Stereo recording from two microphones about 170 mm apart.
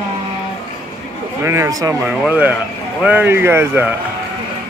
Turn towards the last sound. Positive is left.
turn(degrees=-15)  # may be behind; listen again after turning